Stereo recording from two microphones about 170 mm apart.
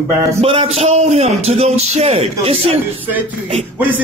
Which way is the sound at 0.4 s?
35° right (ahead or behind).